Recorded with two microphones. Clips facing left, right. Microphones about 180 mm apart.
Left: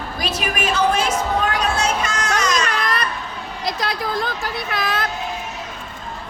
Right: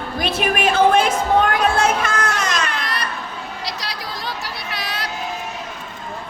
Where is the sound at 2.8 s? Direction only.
50° left (ahead or behind).